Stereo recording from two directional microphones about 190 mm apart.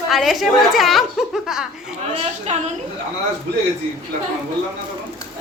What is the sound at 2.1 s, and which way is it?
Speech, 35° right (ahead or behind).